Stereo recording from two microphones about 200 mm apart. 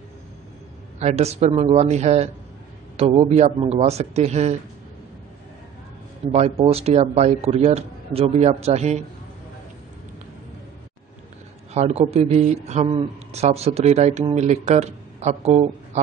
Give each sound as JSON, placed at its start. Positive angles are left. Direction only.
{"t": 0.9, "sound": "a man's voice", "side_deg": -35}
{"t": 6.3, "sound": "a man's voice", "side_deg": -30}
{"t": 11.7, "sound": "a man's voice", "side_deg": -30}